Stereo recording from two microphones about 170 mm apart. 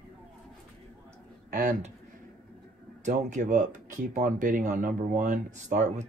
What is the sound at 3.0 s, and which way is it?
Speech, 45° right (ahead or behind).